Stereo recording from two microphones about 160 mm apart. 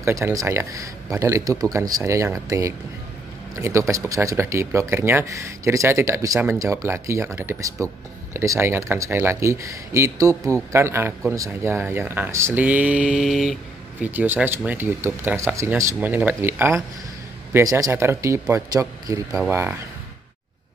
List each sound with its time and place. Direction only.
0.0 s speech: 20° right (ahead or behind); by 13.6 s centre (ahead or behind)
14.0 s speech: 10° right (ahead or behind)